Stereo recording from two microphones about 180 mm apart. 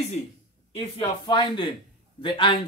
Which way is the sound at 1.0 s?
25° left (ahead or behind).